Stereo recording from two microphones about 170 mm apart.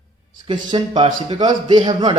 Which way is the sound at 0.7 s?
25° right (ahead or behind).